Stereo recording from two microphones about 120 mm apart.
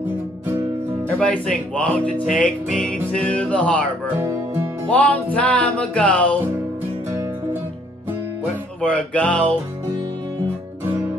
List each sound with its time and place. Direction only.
1.1 s speech: 10° left (ahead or behind)
4.2 s music: 20° right (ahead or behind)
4.8 s speech: 15° left (ahead or behind)
8.8 s speech: 10° left (ahead or behind)